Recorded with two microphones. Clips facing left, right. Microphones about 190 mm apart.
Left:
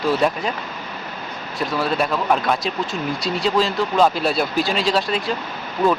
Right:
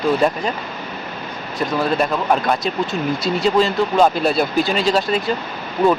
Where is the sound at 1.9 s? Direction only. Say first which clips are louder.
Even; centre (ahead or behind).